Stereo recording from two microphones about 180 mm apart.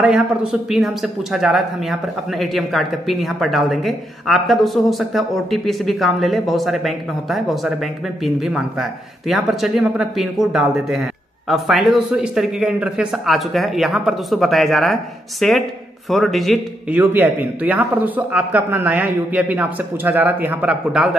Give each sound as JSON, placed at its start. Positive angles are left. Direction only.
{"t": 0.0, "sound": "speech", "side_deg": -5}
{"t": 17.0, "sound": "a man's voice", "side_deg": -10}